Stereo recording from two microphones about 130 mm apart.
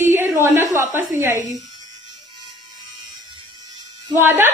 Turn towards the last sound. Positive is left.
turn(degrees=-15)  # may be behind; listen again after turning